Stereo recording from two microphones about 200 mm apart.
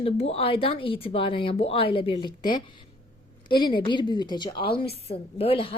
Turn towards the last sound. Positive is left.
turn(degrees=30)  # may be behind; listen again after turning